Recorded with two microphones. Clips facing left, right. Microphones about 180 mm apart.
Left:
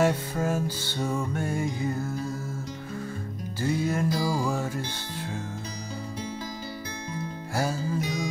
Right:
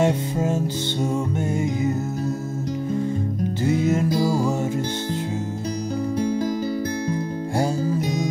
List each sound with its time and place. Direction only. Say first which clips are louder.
0.0 s music: right 4 dB; 25° right (ahead or behind)
3.6 s music: right 5 dB; 20° right (ahead or behind)